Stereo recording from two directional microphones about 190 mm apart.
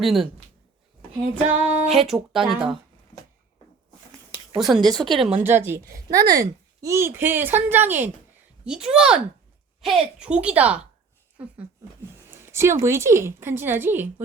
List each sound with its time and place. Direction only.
0.0 s female singing: centre (ahead or behind)
1.5 s female singing: 10° right (ahead or behind)
4.5 s female singing: centre (ahead or behind)
5.4 s speech: 10° right (ahead or behind)
8.6 s female singing: 5° right (ahead or behind)
9.8 s speech: 5° right (ahead or behind)
12.3 s speech: 15° right (ahead or behind)